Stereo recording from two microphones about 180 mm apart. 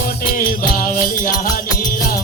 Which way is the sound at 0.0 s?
55° left (ahead or behind).